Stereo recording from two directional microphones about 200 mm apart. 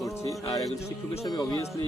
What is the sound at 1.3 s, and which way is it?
Speech, 15° left (ahead or behind).